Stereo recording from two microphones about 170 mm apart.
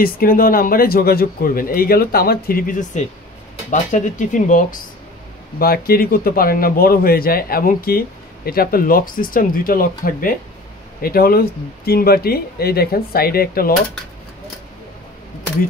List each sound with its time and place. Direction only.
0.0 s speech: 60° left (ahead or behind)
5.6 s speech: 60° left (ahead or behind)